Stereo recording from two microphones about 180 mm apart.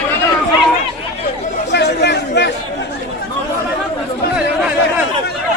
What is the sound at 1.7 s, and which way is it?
Chatter, 70° left (ahead or behind).